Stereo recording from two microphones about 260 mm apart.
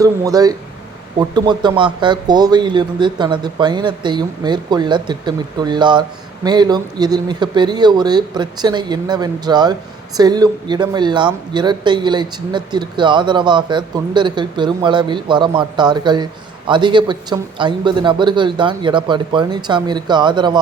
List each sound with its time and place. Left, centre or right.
0.0 s speech: centre